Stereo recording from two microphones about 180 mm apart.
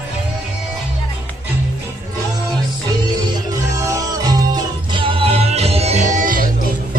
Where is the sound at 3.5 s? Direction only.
20° right (ahead or behind); by 6.7 s 50° right (ahead or behind).